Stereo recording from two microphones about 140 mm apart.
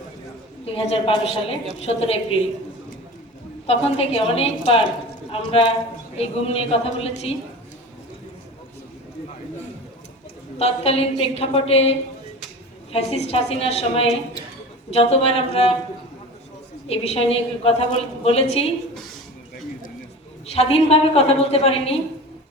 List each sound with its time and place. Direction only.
0.6 s a woman's voice: 40° left (ahead or behind)
3.7 s a woman's voice: 45° left (ahead or behind)
10.6 s a woman's voice: 45° left (ahead or behind)
16.9 s a woman's voice: 45° left (ahead or behind)
20.5 s a woman's voice: 45° left (ahead or behind)